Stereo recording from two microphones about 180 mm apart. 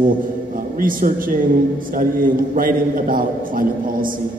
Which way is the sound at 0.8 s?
50° right (ahead or behind).